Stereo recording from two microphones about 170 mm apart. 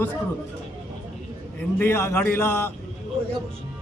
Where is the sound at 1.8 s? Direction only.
15° left (ahead or behind).